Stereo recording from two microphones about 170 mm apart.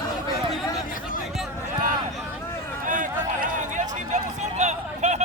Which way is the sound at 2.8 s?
50° right (ahead or behind).